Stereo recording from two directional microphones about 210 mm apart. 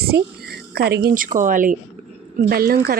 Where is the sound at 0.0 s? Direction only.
50° right (ahead or behind).